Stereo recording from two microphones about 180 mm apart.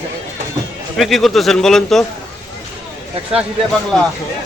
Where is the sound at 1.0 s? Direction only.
Centre (ahead or behind).